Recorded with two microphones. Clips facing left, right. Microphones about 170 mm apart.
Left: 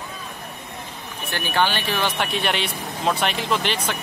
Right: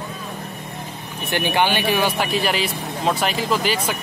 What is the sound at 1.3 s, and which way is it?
Speech, 15° right (ahead or behind).